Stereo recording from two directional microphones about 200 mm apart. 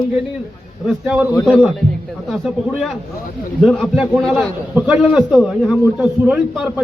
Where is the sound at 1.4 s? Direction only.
Centre (ahead or behind).